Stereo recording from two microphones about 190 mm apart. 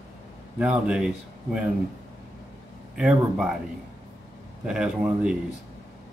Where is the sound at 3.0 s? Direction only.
5° right (ahead or behind).